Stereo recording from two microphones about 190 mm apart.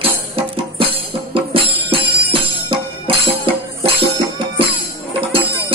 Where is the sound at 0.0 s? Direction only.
30° right (ahead or behind).